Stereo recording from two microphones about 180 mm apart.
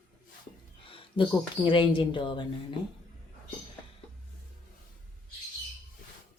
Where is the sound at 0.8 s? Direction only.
30° left (ahead or behind).